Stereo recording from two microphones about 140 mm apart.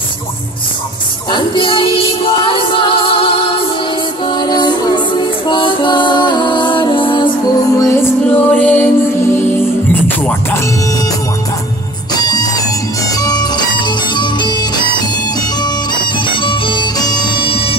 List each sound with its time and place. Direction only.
1.3 s music: 35° left (ahead or behind)
7.7 s music: 20° left (ahead or behind)
10.0 s music: 15° left (ahead or behind)
12.2 s music: 30° left (ahead or behind)